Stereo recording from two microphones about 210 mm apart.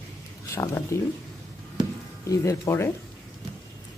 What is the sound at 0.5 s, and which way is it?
Speech, 15° left (ahead or behind).